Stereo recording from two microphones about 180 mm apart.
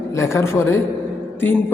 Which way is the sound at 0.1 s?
15° left (ahead or behind).